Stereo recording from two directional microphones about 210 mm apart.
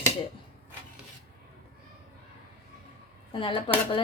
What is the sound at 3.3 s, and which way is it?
Speech, 20° left (ahead or behind).